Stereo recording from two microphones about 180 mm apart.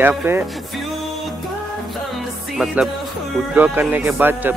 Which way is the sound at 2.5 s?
Centre (ahead or behind).